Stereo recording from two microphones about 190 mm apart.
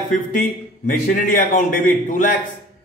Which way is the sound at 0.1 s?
45° left (ahead or behind).